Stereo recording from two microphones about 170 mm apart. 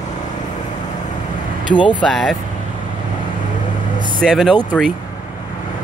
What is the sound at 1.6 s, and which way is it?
Speech, 25° left (ahead or behind).